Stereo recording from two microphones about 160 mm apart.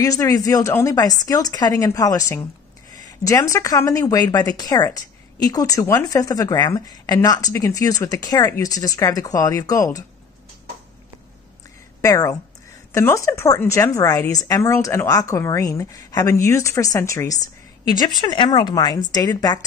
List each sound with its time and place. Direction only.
0.0 s a woman's voice: 20° left (ahead or behind)
2.9 s a sound: 20° left (ahead or behind)
3.5 s a woman's voice: 20° left (ahead or behind)
12.0 s a woman's voice: 20° left (ahead or behind)